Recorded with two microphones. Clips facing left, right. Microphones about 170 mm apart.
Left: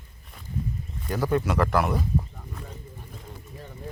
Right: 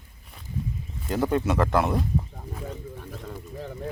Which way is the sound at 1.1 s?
20° right (ahead or behind).